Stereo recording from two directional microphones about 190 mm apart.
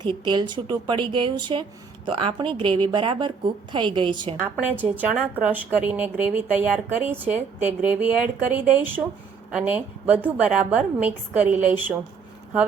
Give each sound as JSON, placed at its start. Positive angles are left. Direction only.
{"t": 0.0, "sound": "a woman's voice", "side_deg": -25}
{"t": 4.8, "sound": "a woman's voice", "side_deg": -10}